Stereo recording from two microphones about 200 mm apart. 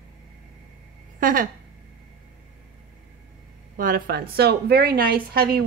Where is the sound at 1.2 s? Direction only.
45° right (ahead or behind).